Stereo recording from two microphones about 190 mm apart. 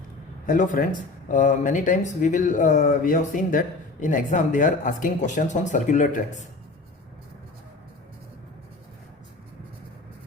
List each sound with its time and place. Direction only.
0.4 s speech: 45° left (ahead or behind)